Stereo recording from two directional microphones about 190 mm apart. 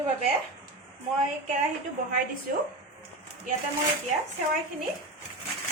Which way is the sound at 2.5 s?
50° right (ahead or behind).